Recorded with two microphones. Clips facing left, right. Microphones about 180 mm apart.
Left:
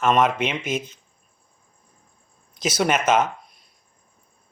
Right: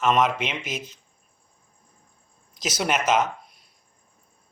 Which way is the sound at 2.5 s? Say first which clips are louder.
Left 4 dB; 50° left (ahead or behind).